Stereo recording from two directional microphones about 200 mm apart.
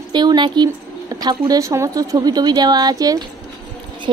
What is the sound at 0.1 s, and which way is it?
A woman's voice, 20° right (ahead or behind).